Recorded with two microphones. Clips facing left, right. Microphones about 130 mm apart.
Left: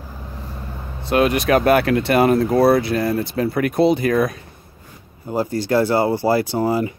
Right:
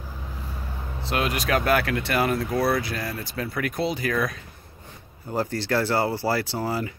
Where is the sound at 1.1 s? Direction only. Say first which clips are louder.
Left 9 dB; 30° left (ahead or behind).